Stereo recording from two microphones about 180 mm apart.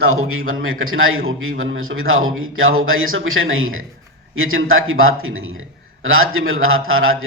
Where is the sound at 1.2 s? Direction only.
90° right.